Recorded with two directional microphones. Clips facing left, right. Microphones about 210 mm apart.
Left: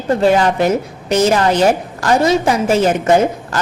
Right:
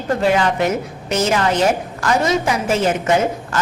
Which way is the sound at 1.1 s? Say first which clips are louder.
Left 4 dB; 35° left (ahead or behind).